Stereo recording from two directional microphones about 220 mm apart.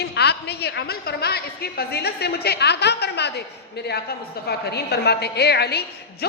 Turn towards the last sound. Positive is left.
turn(degrees=45)  # may be behind; listen again after turning